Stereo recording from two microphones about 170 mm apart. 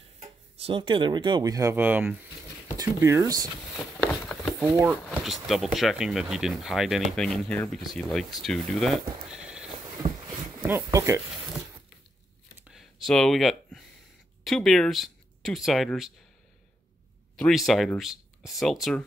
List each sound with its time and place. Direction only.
0.2 s speech: 35° right (ahead or behind)
4.6 s speech: 15° right (ahead or behind)
5.0 s speech: centre (ahead or behind)
10.9 s speech: 20° right (ahead or behind)
12.5 s a sound: 5° right (ahead or behind)
14.4 s speech: centre (ahead or behind)
17.4 s speech: centre (ahead or behind)